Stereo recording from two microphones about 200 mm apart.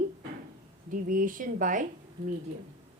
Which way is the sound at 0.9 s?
40° right (ahead or behind).